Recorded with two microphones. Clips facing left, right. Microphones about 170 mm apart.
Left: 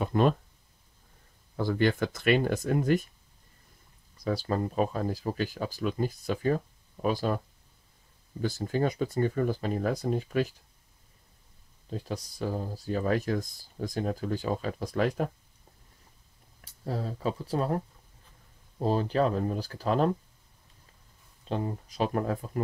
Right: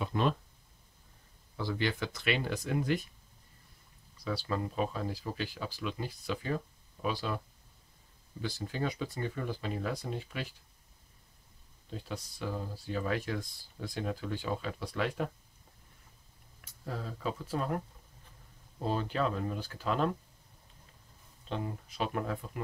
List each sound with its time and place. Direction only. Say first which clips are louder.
0.0 s speech: left 6 dB; 45° left (ahead or behind)
1.6 s speech: left 7 dB; 50° left (ahead or behind)
4.2 s speech: left 5 dB; 45° left (ahead or behind)
11.9 s speech: left 5 dB; 40° left (ahead or behind)
16.6 s speech: left 6 dB; 35° left (ahead or behind)
21.5 s speech: left 5 dB; 35° left (ahead or behind)